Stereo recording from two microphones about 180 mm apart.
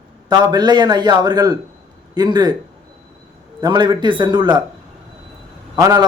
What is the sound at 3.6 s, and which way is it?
Speech, 20° right (ahead or behind).